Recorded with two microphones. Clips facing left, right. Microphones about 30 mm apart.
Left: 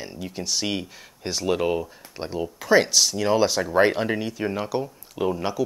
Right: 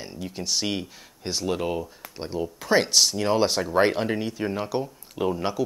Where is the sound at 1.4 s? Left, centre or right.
Centre.